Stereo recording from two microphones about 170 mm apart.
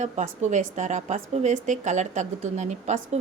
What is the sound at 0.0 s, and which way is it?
A woman's voice, 45° right (ahead or behind).